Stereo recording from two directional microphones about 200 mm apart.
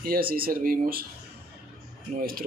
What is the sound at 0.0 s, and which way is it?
Speech, 45° right (ahead or behind).